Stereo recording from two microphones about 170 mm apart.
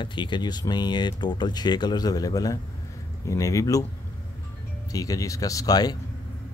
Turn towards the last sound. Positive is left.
turn(degrees=25)  # may be behind; listen again after turning